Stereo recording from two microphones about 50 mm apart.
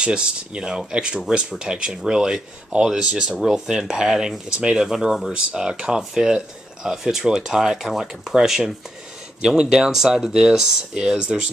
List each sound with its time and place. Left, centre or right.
0.0 s speech: centre
11.1 s speech: right